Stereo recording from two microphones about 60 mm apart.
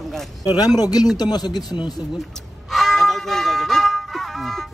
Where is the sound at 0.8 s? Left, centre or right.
Left.